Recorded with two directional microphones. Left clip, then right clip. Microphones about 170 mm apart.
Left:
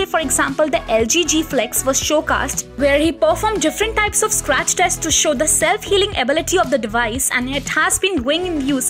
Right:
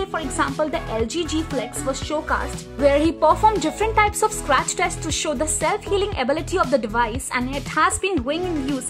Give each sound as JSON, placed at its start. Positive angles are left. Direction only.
{"t": 0.0, "sound": "speech", "side_deg": 15}
{"t": 1.0, "sound": "speech", "side_deg": -25}
{"t": 2.8, "sound": "speech", "side_deg": 0}